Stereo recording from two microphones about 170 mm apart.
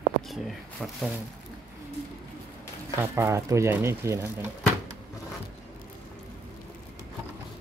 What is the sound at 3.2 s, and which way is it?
Speech, 15° right (ahead or behind).